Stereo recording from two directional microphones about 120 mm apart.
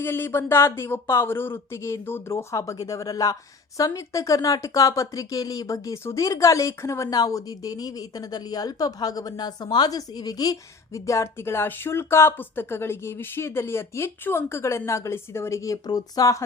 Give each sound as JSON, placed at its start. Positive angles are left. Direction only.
{"t": 0.0, "sound": "speech", "side_deg": 20}